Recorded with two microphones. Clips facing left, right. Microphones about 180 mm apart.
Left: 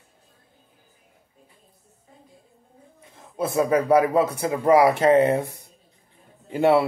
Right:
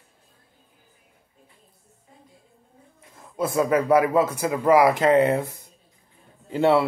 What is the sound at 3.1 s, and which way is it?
Speech, 25° left (ahead or behind).